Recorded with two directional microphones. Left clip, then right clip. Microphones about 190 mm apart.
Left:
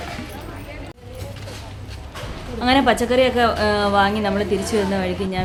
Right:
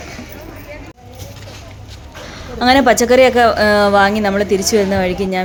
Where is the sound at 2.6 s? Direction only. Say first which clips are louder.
Right 6 dB; 35° right (ahead or behind).